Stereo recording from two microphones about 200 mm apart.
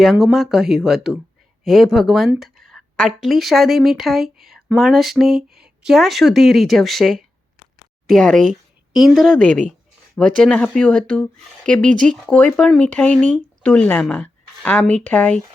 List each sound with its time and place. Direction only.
0.0 s a woman's voice: centre (ahead or behind)
11.8 s speech: 40° right (ahead or behind)
12.1 s a woman's voice: 5° left (ahead or behind)